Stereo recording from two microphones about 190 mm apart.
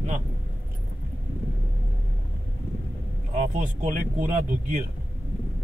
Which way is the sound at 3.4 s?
40° right (ahead or behind).